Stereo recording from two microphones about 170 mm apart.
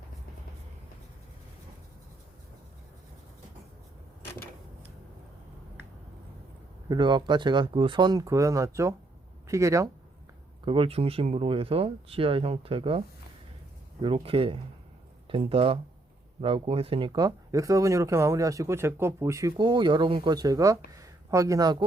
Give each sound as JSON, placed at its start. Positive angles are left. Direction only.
{"t": 6.8, "sound": "speech", "side_deg": -25}
{"t": 10.7, "sound": "speech", "side_deg": -35}
{"t": 14.0, "sound": "speech", "side_deg": -30}